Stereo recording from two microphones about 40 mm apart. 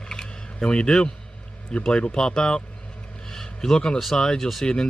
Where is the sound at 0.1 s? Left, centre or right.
Centre.